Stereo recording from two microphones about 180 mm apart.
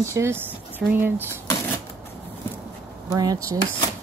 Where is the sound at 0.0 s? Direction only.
15° right (ahead or behind).